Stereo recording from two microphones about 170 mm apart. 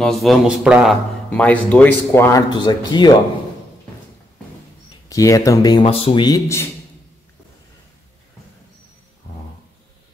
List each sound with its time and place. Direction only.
0.0 s speech: centre (ahead or behind)
2.5 s a man's voice: 25° left (ahead or behind)
5.1 s a man's voice: 20° left (ahead or behind)